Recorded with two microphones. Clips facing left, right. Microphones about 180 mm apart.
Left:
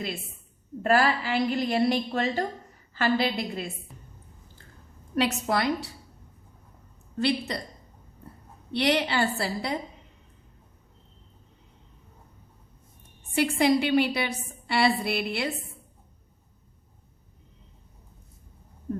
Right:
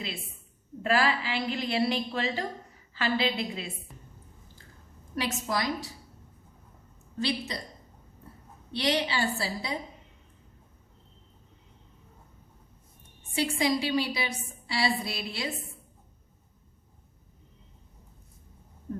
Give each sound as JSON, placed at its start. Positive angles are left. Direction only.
{"t": 0.8, "sound": "a woman's voice", "side_deg": 45}
{"t": 5.1, "sound": "a woman's voice", "side_deg": 60}
{"t": 7.2, "sound": "a woman's voice", "side_deg": 60}
{"t": 8.7, "sound": "a woman's voice", "side_deg": 60}
{"t": 13.3, "sound": "a woman's voice", "side_deg": 60}